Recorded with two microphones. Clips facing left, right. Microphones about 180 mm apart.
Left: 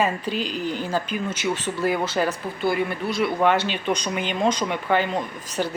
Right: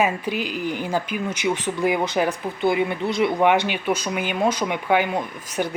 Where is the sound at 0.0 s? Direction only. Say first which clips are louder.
Right 1 dB; 10° right (ahead or behind).